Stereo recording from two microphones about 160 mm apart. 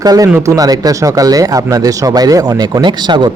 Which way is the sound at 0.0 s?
25° right (ahead or behind).